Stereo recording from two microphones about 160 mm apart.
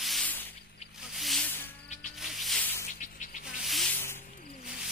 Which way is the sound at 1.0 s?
Centre (ahead or behind).